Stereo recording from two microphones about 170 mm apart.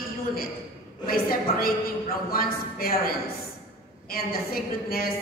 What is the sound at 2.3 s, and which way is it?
A woman's voice, 60° left (ahead or behind).